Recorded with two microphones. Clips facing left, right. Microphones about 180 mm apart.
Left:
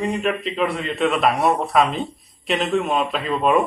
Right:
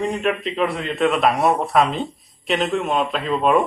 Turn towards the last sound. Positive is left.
turn(degrees=0)  # may be behind; listen again after turning